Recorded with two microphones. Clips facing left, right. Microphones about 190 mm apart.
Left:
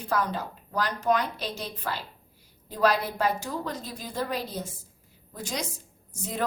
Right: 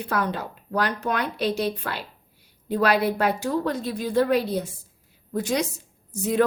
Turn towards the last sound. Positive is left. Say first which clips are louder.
# right 10 dB
turn(degrees=-65)  # may be behind; listen again after turning